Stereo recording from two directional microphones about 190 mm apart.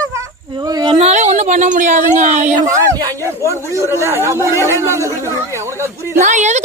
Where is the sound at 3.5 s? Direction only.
15° right (ahead or behind).